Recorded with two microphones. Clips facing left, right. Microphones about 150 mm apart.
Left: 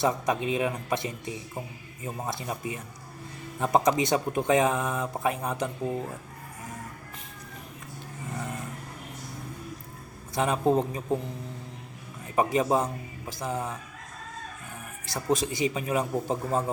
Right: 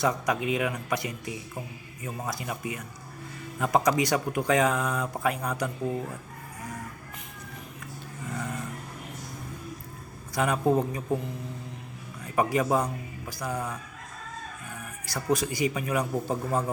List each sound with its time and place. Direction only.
0.0 s speech: 25° left (ahead or behind)
8.3 s vehicle: 20° left (ahead or behind)
10.3 s speech: 25° left (ahead or behind)
12.2 s speech: 25° left (ahead or behind)
15.0 s speech: 25° left (ahead or behind)